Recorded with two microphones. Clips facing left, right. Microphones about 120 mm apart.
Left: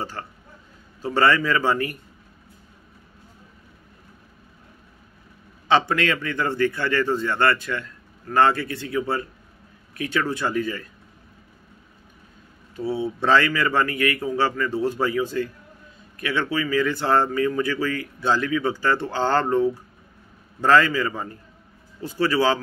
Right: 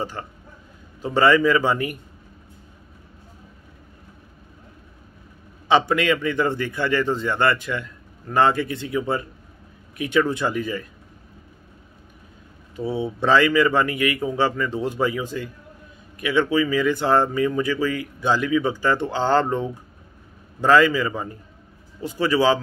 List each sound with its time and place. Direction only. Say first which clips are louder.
0.2 s speech: right 1 dB; 15° right (ahead or behind)
5.7 s speech: right 2 dB; 15° right (ahead or behind)
12.7 s speech: even; 15° right (ahead or behind)